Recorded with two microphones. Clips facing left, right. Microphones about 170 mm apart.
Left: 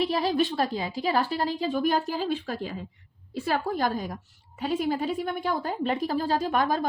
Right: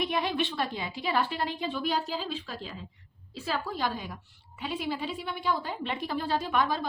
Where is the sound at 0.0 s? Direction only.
35° left (ahead or behind).